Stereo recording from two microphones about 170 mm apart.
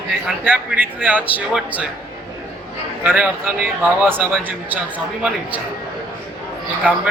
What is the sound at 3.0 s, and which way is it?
A man's voice, 10° right (ahead or behind).